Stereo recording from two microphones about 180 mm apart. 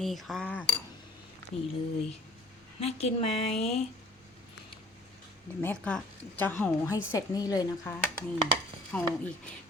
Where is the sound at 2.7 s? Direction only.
35° left (ahead or behind).